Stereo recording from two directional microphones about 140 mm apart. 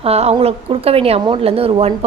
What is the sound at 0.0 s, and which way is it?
A woman's voice, 50° right (ahead or behind).